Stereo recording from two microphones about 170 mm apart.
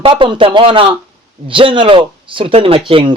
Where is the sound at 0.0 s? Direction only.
30° right (ahead or behind).